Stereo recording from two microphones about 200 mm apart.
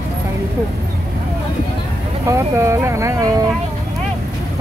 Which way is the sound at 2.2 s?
15° right (ahead or behind).